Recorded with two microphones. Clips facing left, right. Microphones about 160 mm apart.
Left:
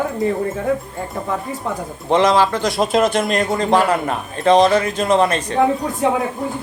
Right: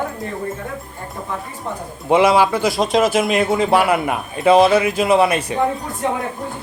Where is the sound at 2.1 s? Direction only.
10° right (ahead or behind).